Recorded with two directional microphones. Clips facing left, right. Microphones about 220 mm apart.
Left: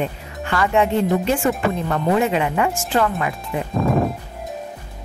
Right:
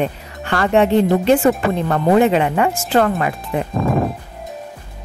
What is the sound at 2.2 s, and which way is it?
Speech, 35° right (ahead or behind).